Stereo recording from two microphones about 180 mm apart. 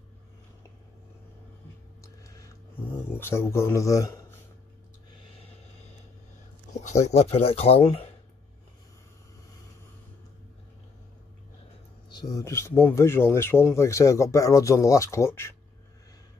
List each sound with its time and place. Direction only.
2.2 s a sound: 20° left (ahead or behind)
3.2 s speech: 15° left (ahead or behind)
6.7 s speech: 40° left (ahead or behind)
12.1 s speech: 20° left (ahead or behind)